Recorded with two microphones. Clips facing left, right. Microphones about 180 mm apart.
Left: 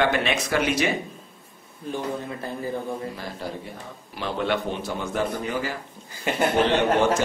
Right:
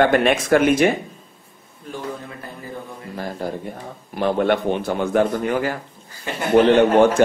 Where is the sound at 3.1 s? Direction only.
50° right (ahead or behind).